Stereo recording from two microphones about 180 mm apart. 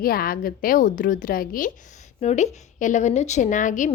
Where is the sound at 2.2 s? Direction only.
40° left (ahead or behind).